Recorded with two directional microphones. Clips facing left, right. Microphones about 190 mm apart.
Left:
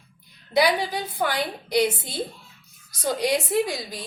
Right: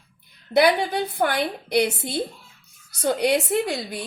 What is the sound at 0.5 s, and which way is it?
A woman's voice, 60° right (ahead or behind).